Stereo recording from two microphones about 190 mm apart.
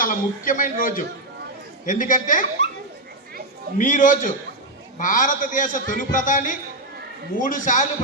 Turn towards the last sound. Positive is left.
turn(degrees=40)  # may be behind; listen again after turning